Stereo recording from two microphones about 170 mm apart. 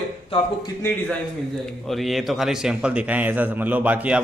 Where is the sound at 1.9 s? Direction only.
Centre (ahead or behind).